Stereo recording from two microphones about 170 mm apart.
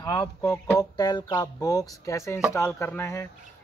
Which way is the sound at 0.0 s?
20° left (ahead or behind).